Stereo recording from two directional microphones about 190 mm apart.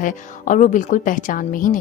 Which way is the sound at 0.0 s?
40° left (ahead or behind).